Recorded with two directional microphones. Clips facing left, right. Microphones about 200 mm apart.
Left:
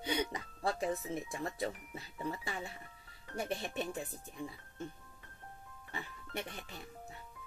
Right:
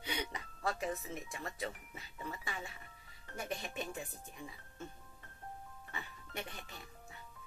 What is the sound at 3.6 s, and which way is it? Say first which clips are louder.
Speech: left 4 dB; 35° left (ahead or behind).